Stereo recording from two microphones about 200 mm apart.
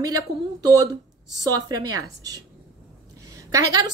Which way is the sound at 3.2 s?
15° right (ahead or behind).